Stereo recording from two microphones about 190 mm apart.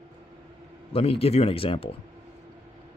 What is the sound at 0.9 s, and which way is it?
Speech, 30° left (ahead or behind).